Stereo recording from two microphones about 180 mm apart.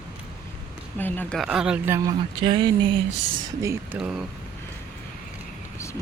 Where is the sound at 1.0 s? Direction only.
10° left (ahead or behind).